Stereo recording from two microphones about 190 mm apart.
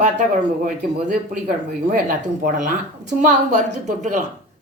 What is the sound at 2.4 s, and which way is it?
A woman's voice, 45° right (ahead or behind).